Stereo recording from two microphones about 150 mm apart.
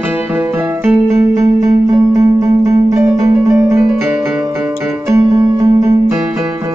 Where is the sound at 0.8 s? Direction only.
15° right (ahead or behind).